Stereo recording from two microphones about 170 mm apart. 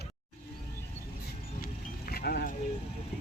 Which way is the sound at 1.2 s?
65° left (ahead or behind).